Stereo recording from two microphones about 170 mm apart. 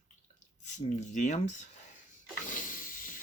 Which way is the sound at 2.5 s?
50° left (ahead or behind).